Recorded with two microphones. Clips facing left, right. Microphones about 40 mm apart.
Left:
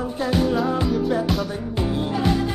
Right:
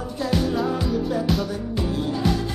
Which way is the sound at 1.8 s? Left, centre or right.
Left.